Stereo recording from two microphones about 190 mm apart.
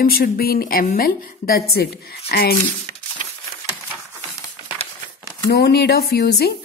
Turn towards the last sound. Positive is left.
turn(degrees=55)  # may be behind; listen again after turning